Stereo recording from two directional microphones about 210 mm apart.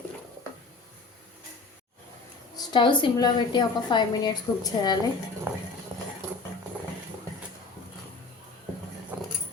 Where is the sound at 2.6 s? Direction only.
20° left (ahead or behind).